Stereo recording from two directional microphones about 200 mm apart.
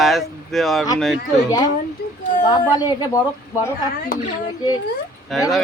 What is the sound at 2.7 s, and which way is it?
Speech, 20° left (ahead or behind).